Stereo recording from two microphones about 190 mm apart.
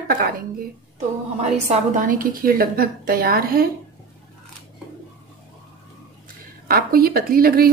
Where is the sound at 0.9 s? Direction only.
40° right (ahead or behind).